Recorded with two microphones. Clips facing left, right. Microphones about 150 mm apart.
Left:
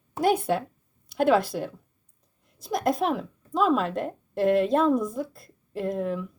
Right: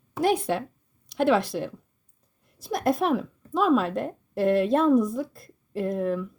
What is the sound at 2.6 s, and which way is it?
A woman's voice, centre (ahead or behind).